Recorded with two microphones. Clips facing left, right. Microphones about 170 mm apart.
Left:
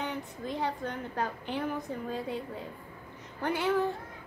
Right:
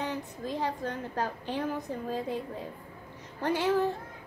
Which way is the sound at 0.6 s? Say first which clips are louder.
Right 1 dB; 30° right (ahead or behind).